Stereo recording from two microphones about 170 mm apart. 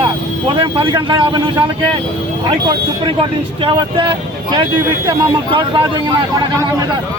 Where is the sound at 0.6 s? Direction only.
30° right (ahead or behind).